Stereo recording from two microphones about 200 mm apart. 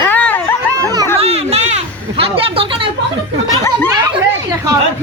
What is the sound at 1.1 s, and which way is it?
A child's voice, 30° right (ahead or behind).